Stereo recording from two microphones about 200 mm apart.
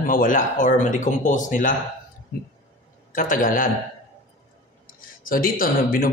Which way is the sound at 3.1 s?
45° left (ahead or behind).